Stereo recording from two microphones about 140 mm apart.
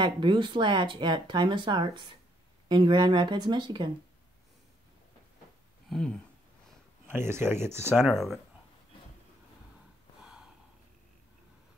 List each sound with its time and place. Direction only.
0.0 s speech: 35° right (ahead or behind)
5.9 s a sound: 5° left (ahead or behind)
7.1 s speech: 15° right (ahead or behind)
8.0 s speech: centre (ahead or behind)
10.2 s gasp: 5° right (ahead or behind)